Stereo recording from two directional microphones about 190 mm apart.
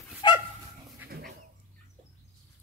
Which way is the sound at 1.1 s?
55° right (ahead or behind).